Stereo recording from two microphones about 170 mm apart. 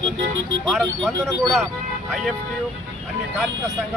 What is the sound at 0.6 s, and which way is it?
Speech, centre (ahead or behind).